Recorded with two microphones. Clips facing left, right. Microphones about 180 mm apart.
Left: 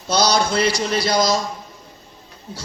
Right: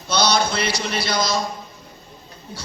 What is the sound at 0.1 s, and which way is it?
A man's voice, 40° left (ahead or behind).